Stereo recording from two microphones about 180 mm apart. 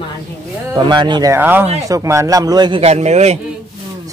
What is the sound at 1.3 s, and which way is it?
A man's voice, 10° right (ahead or behind).